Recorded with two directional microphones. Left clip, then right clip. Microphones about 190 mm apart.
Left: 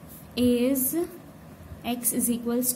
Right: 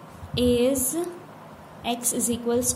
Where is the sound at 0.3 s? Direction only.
20° left (ahead or behind).